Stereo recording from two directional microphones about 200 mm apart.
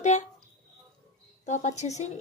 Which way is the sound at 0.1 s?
35° left (ahead or behind).